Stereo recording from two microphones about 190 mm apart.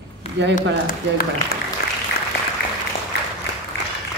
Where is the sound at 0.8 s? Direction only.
50° left (ahead or behind).